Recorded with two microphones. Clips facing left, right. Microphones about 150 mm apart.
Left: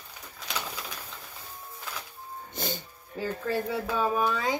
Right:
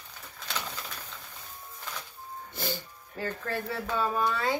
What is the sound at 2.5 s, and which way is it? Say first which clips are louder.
Speech: even; 20° left (ahead or behind).